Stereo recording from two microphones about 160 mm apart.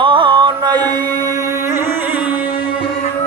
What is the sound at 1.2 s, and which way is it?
Music, 20° right (ahead or behind).